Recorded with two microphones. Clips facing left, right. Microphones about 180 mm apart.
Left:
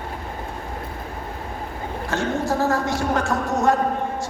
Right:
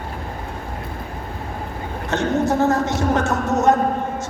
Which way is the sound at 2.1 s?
20° right (ahead or behind).